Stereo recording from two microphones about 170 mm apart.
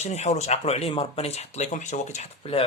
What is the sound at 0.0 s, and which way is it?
Speech, 40° left (ahead or behind).